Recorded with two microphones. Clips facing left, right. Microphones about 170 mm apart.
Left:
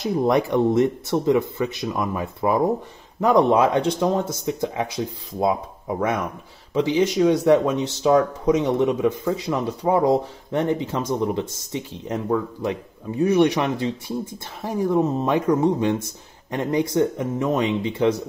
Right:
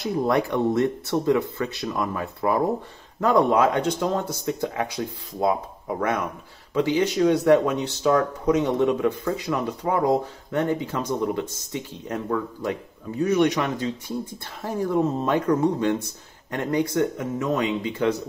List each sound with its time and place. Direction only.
0.0 s speech: 20° left (ahead or behind)